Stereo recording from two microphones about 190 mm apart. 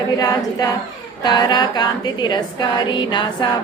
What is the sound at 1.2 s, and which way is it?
A woman's voice, 20° left (ahead or behind).